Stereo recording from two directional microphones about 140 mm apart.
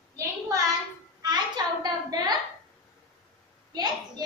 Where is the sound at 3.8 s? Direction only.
30° right (ahead or behind).